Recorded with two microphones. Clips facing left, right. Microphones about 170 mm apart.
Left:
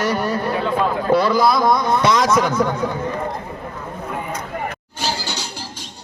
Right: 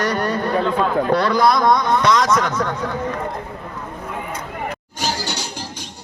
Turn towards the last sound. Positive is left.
turn(degrees=-15)  # may be behind; listen again after turning